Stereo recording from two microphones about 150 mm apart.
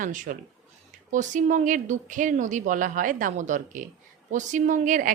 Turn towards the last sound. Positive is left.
turn(degrees=-60)  # may be behind; listen again after turning